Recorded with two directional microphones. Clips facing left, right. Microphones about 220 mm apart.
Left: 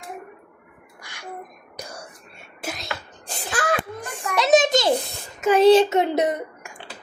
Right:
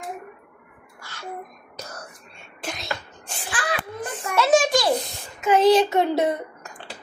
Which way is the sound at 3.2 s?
45° left (ahead or behind).